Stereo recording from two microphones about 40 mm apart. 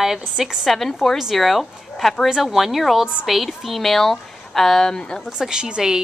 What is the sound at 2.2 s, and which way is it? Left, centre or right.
A woman's voice, centre.